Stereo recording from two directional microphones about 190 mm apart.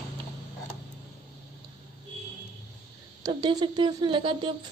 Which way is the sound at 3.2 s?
25° right (ahead or behind).